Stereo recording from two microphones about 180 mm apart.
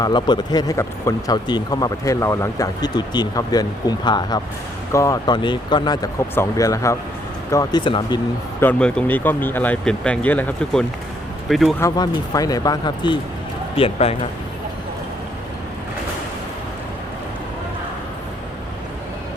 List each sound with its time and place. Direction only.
0.0 s speech: 25° left (ahead or behind)
8.6 s speech: 5° left (ahead or behind)
11.8 s speech: 20° left (ahead or behind)